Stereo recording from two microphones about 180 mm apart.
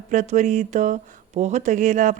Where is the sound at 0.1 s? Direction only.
40° right (ahead or behind).